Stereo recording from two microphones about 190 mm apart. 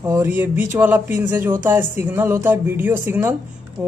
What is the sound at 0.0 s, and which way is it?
Speech, 10° right (ahead or behind).